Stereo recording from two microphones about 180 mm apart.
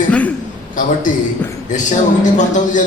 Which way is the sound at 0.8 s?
45° left (ahead or behind).